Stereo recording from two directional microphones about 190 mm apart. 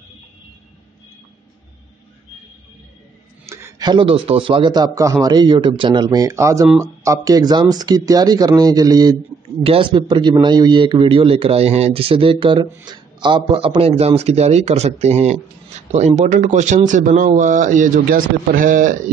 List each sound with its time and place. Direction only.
3.4 s a man's voice: 20° right (ahead or behind); by 18.9 s 45° right (ahead or behind)